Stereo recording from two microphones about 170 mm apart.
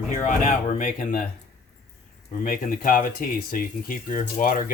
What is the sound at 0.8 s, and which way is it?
Speech, 55° left (ahead or behind).